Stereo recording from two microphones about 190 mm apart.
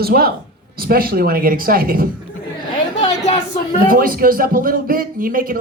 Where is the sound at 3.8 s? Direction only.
45° right (ahead or behind).